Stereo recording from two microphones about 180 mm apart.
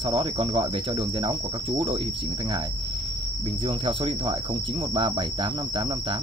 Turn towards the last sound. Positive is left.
turn(degrees=-30)  # may be behind; listen again after turning